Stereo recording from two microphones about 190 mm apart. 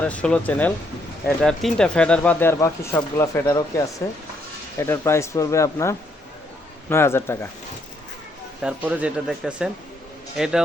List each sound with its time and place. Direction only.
0.0 s speech: 5° left (ahead or behind)
8.6 s speech: 5° right (ahead or behind)